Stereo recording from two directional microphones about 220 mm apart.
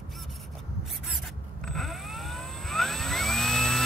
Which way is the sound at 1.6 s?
Centre (ahead or behind).